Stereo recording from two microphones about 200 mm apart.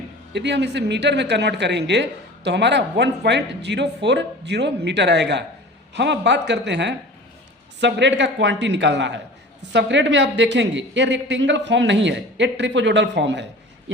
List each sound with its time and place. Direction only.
0.3 s speech: 60° right (ahead or behind)